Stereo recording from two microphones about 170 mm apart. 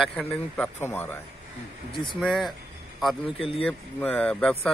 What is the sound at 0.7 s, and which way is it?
Speech, 15° left (ahead or behind).